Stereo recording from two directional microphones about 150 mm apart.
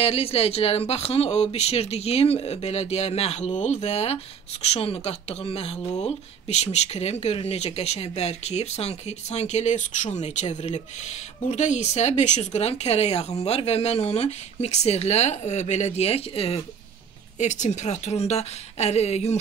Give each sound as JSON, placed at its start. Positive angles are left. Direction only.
{"t": 0.0, "sound": "speech", "side_deg": 40}
{"t": 17.4, "sound": "speech", "side_deg": 50}